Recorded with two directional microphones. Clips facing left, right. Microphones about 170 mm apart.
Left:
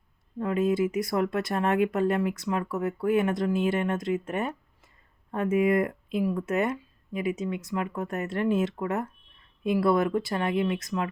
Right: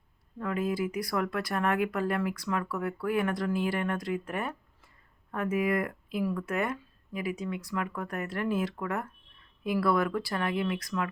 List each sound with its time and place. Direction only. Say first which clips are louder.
0.3 s speech: left 5 dB; 25° left (ahead or behind)